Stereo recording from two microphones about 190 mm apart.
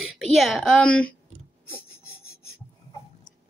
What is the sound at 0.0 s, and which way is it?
A woman's voice, centre (ahead or behind).